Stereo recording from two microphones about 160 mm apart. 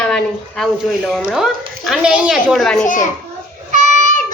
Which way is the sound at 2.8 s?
55° left (ahead or behind).